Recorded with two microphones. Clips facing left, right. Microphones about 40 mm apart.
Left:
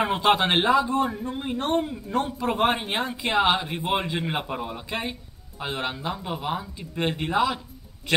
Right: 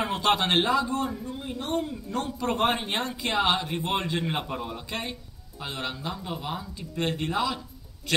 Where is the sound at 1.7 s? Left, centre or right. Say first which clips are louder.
Left 3 dB; left.